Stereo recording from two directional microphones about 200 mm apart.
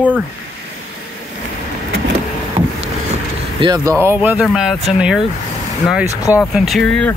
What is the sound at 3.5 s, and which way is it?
Speech, 20° right (ahead or behind).